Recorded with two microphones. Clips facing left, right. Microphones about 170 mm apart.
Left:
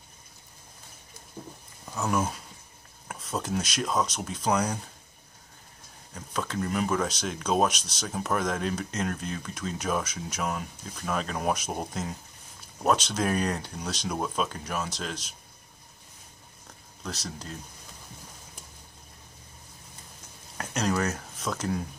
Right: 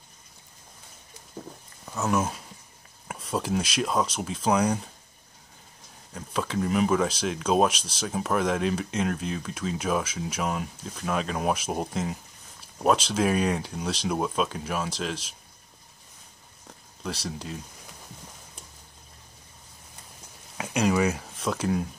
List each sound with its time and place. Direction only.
1.9 s speech: centre (ahead or behind)
6.1 s speech: 5° right (ahead or behind)
20.5 s speech: 10° right (ahead or behind)